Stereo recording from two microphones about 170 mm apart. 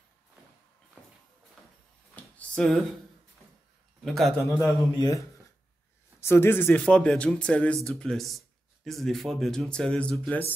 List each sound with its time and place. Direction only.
2.3 s a sound: 5° left (ahead or behind)
4.0 s a man's voice: centre (ahead or behind)
4.4 s a man's voice: 15° left (ahead or behind)
6.2 s speech: 15° left (ahead or behind)